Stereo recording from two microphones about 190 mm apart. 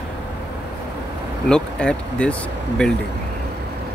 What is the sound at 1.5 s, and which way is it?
Speech, 5° left (ahead or behind).